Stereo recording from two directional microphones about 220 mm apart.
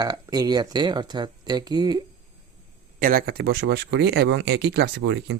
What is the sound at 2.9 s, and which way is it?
Speech, 40° right (ahead or behind).